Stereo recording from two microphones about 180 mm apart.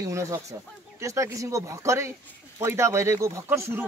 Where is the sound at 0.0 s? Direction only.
15° right (ahead or behind).